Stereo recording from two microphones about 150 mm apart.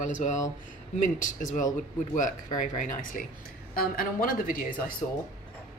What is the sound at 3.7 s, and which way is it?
Speech, 70° left (ahead or behind).